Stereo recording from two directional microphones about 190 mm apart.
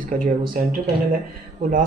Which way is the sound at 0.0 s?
45° right (ahead or behind).